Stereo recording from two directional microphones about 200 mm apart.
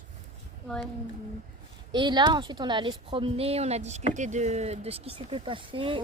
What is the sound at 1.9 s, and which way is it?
A woman's voice, 25° right (ahead or behind).